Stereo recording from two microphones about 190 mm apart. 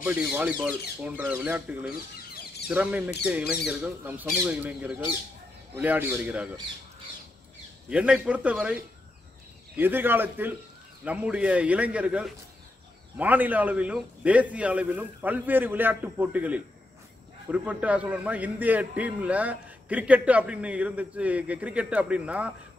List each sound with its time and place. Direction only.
0.0 s a man's voice: 10° right (ahead or behind)
7.9 s a man's voice: 5° right (ahead or behind)
9.8 s a man's voice: 10° right (ahead or behind)